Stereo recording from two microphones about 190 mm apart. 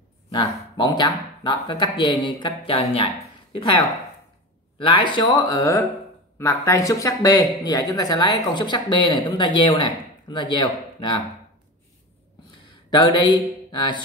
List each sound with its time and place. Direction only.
0.3 s speech: 20° left (ahead or behind)
12.9 s speech: 25° left (ahead or behind)